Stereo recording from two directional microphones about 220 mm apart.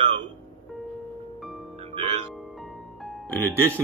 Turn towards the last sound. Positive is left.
turn(degrees=0)  # may be behind; listen again after turning